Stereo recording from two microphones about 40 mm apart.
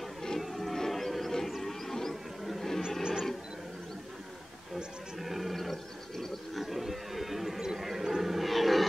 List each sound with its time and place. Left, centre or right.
0.4 s music: centre
0.7 s wild animals: centre
1.6 s music: centre
2.4 s a sound: centre
3.0 s wild animals: centre
5.2 s wild animals: centre
6.6 s a sound: centre